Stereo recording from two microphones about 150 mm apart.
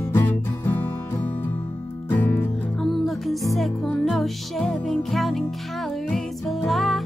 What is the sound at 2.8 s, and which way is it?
Music, centre (ahead or behind).